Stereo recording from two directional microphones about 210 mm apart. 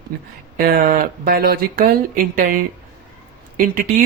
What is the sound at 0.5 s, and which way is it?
A woman's voice, 40° right (ahead or behind).